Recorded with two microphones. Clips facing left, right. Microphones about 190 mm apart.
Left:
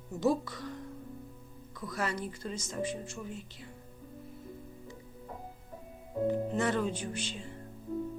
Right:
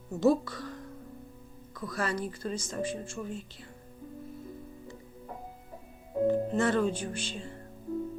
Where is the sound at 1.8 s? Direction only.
20° left (ahead or behind).